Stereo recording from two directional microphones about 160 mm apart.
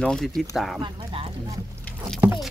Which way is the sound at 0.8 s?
30° right (ahead or behind).